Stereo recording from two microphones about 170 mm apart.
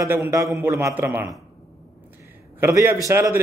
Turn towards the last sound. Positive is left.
turn(degrees=-15)  # may be behind; listen again after turning